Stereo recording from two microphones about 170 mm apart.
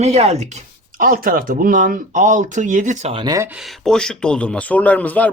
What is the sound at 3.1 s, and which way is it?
Speech, 25° right (ahead or behind).